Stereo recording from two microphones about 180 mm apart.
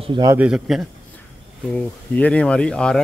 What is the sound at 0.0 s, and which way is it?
Speech, 25° right (ahead or behind).